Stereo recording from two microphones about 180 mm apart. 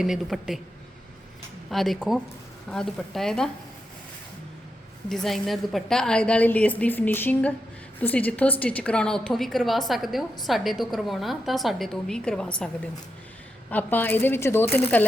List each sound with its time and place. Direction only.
0.0 s a woman's voice: centre (ahead or behind)
1.7 s a woman's voice: centre (ahead or behind)
5.0 s a woman's voice: centre (ahead or behind)